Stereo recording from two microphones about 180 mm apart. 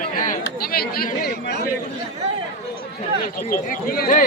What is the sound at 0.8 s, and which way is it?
Speech, 55° left (ahead or behind).